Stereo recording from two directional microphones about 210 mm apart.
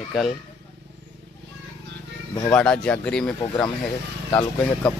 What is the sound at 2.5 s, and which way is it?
Speech, 5° left (ahead or behind).